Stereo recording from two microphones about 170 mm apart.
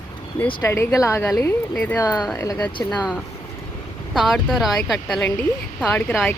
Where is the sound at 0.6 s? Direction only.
15° left (ahead or behind).